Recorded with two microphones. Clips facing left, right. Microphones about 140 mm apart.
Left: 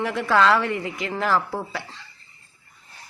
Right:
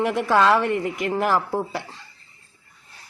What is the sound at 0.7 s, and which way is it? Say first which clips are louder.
Speech: right 4 dB; 50° right (ahead or behind).